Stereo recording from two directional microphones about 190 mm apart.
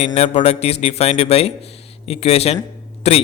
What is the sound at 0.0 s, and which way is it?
A man's voice, 35° left (ahead or behind).